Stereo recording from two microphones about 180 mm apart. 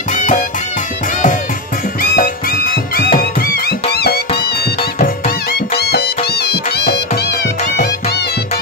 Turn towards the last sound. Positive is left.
turn(degrees=65)  # may be behind; listen again after turning